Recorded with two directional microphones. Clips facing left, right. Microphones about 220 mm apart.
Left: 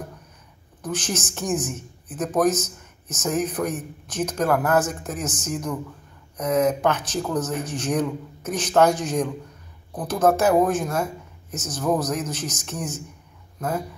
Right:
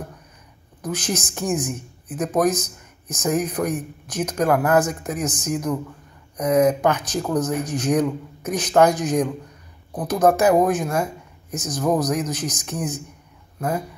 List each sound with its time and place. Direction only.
0.8 s speech: 10° right (ahead or behind)